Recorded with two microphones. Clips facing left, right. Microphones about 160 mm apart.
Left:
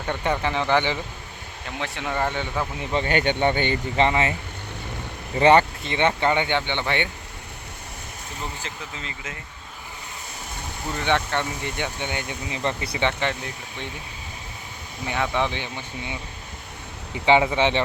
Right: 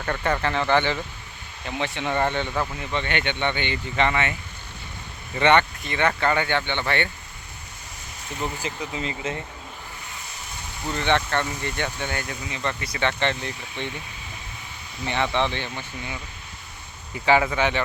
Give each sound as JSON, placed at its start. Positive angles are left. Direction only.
{"t": 0.0, "sound": "speech", "side_deg": 10}
{"t": 1.6, "sound": "speech", "side_deg": 0}
{"t": 2.9, "sound": "speech", "side_deg": 40}
{"t": 4.0, "sound": "speech", "side_deg": 30}
{"t": 5.4, "sound": "speech", "side_deg": 35}
{"t": 8.6, "sound": "speech", "side_deg": -15}
{"t": 10.9, "sound": "speech", "side_deg": 10}
{"t": 13.1, "sound": "speech", "side_deg": 5}
{"t": 15.0, "sound": "speech", "side_deg": 5}
{"t": 17.2, "sound": "speech", "side_deg": 20}